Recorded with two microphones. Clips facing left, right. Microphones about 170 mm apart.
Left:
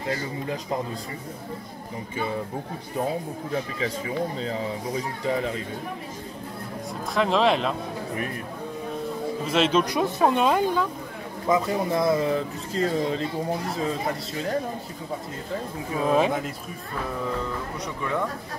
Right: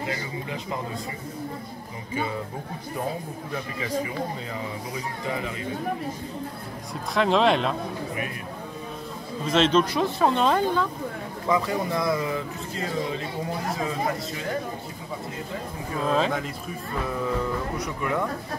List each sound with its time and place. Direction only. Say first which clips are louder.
7.2 s speech: right 1 dB; centre (ahead or behind)
9.5 s speech: right 2 dB; 10° left (ahead or behind)
11.4 s speech: left 2 dB; 25° left (ahead or behind)
16.0 s speech: left 2 dB; 15° left (ahead or behind)